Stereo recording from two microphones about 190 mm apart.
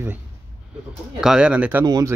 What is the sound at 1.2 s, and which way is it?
Speech, 5° right (ahead or behind).